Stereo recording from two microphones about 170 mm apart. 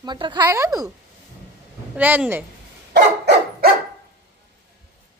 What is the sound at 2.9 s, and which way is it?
Dog, 65° right (ahead or behind).